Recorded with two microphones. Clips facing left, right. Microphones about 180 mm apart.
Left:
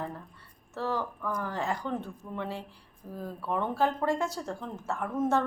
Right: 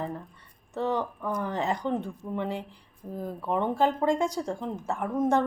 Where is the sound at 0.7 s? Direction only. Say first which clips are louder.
Right 4 dB; 20° right (ahead or behind).